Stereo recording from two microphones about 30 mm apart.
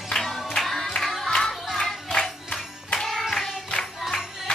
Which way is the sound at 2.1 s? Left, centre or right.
Left.